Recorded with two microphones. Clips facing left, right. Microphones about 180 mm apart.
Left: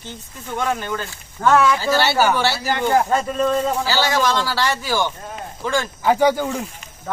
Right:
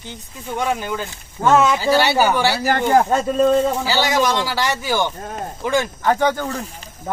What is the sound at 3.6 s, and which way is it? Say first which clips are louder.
A man's voice: right 1 dB; 20° right (ahead or behind).